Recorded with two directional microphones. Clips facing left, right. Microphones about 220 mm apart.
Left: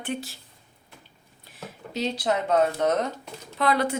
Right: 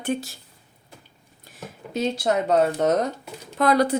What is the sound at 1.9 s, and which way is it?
Speech, 50° right (ahead or behind).